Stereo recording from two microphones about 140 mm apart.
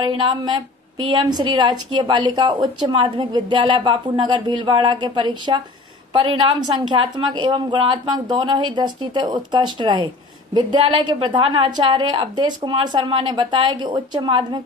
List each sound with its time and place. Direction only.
0.0 s a woman's voice: 35° right (ahead or behind)
6.9 s a woman's voice: 35° right (ahead or behind)